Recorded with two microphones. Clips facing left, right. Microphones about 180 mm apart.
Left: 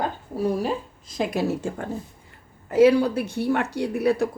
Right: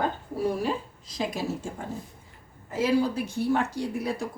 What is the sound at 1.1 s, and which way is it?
Speech, 60° left (ahead or behind).